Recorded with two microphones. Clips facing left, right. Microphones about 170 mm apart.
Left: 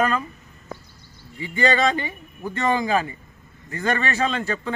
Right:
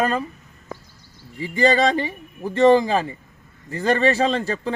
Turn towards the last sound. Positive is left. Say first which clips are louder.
# right 3 dB
turn(degrees=-35)  # may be behind; listen again after turning